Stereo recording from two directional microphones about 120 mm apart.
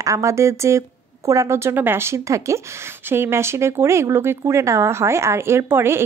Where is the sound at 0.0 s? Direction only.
25° right (ahead or behind).